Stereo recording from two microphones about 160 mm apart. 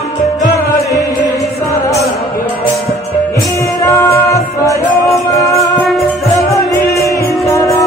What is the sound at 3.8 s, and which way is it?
Music, 20° left (ahead or behind).